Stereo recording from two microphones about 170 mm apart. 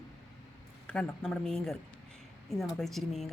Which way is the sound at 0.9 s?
5° left (ahead or behind).